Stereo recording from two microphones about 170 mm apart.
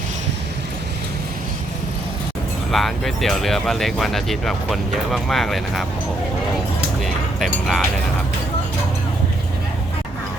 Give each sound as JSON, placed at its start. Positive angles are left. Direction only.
{"t": 2.7, "sound": "speech", "side_deg": 0}
{"t": 7.0, "sound": "music", "side_deg": 0}